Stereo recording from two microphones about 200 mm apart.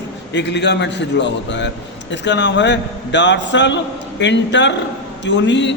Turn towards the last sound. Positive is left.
turn(degrees=65)  # may be behind; listen again after turning